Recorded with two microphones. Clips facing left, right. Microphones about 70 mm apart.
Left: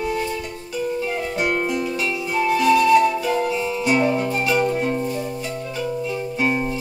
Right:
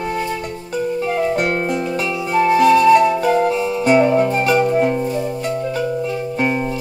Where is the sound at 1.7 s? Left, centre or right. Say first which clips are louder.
Right 3 dB; right.